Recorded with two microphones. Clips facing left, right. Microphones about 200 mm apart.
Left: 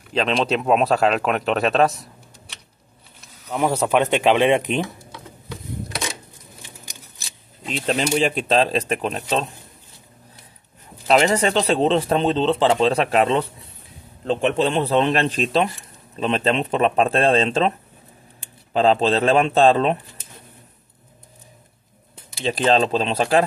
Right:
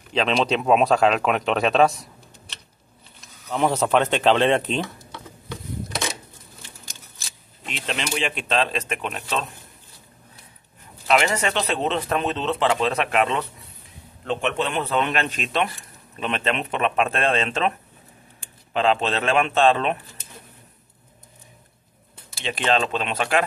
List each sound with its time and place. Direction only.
0.1 s speech: centre (ahead or behind)
3.4 s speech: 10° left (ahead or behind)
7.7 s speech: 40° left (ahead or behind)
11.1 s speech: 35° left (ahead or behind)
22.4 s speech: 35° left (ahead or behind)